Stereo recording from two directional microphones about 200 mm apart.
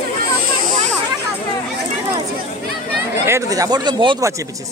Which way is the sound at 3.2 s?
15° right (ahead or behind).